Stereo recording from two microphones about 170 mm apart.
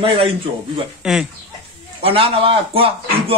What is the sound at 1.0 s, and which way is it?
Speech, 5° right (ahead or behind).